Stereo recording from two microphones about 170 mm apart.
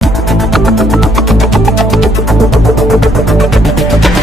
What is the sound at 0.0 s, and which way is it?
Music, centre (ahead or behind).